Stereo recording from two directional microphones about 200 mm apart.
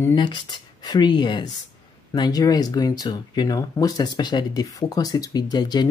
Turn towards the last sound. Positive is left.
turn(degrees=20)  # may be behind; listen again after turning